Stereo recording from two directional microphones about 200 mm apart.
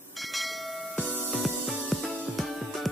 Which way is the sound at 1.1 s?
5° right (ahead or behind).